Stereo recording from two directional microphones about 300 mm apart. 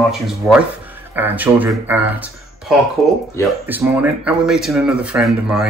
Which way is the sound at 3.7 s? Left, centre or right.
Centre.